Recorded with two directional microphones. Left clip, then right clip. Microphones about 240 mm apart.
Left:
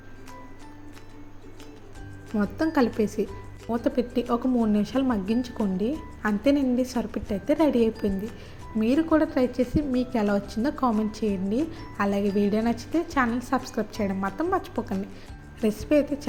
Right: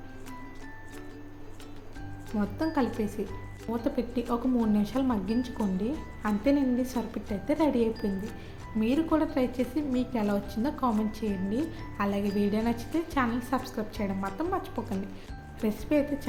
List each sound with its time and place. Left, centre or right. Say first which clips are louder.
2.4 s a woman's voice: left 5 dB; left